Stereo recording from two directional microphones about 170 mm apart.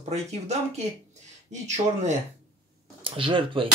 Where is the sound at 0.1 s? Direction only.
40° right (ahead or behind).